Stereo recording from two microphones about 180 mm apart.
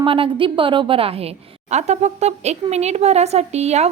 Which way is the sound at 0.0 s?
30° right (ahead or behind).